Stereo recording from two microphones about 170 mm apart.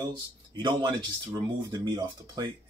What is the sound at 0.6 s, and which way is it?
Speech, 25° right (ahead or behind).